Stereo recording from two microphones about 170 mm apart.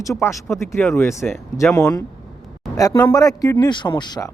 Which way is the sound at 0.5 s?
15° left (ahead or behind).